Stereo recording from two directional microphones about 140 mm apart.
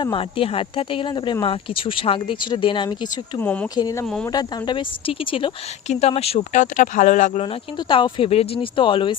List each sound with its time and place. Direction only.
0.0 s speech: 35° left (ahead or behind)
3.4 s speech: 10° left (ahead or behind)
3.8 s speech: 25° left (ahead or behind)
4.0 s speech: 5° left (ahead or behind)
4.3 s speech: 30° left (ahead or behind)
5.9 s speech: 50° left (ahead or behind)
6.5 s speech: 60° left (ahead or behind)
7.9 s speech: 35° left (ahead or behind)